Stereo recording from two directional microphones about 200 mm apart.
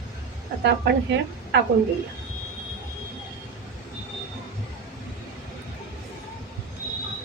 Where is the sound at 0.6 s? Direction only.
60° right (ahead or behind).